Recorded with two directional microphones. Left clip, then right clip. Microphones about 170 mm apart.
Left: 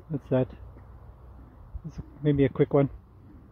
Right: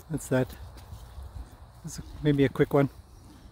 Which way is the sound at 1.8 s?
25° right (ahead or behind).